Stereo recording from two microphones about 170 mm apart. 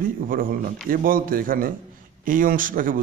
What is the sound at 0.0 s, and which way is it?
A man's voice, 55° right (ahead or behind).